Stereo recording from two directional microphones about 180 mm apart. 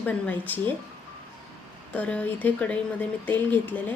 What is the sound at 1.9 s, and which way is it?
Speech, 10° left (ahead or behind).